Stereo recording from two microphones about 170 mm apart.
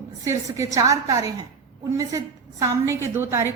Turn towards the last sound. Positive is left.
turn(degrees=-15)  # may be behind; listen again after turning